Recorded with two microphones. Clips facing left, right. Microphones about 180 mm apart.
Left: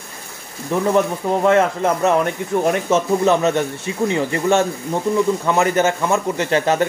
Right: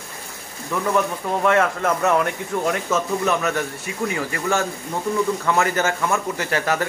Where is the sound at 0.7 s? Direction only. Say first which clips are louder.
Left 5 dB; 25° left (ahead or behind).